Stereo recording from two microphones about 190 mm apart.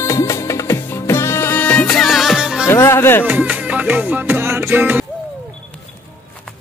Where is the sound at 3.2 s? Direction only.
10° right (ahead or behind).